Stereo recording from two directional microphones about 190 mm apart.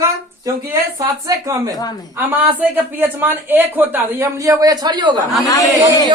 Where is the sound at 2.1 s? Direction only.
10° right (ahead or behind).